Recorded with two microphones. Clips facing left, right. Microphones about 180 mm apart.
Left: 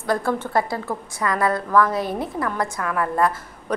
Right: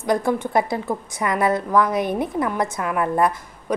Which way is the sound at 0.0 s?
15° right (ahead or behind).